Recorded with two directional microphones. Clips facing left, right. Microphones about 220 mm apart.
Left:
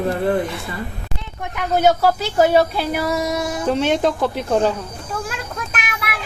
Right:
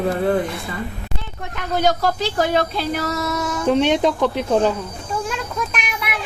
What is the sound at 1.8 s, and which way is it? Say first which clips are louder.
Speech: left 3 dB; 5° left (ahead or behind).